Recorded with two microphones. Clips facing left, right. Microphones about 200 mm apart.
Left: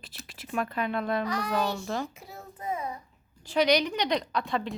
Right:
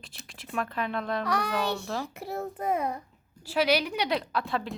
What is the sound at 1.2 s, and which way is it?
Child singing, 65° right (ahead or behind).